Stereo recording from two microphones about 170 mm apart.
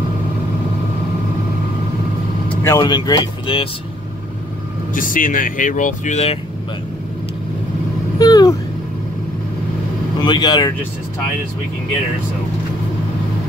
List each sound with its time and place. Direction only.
2.6 s speech: 20° left (ahead or behind)
4.9 s speech: 50° left (ahead or behind)
8.2 s vehicle: 20° left (ahead or behind)
10.2 s speech: 25° left (ahead or behind)